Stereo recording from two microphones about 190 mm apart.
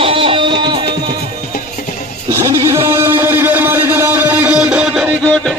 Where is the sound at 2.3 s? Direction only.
15° right (ahead or behind).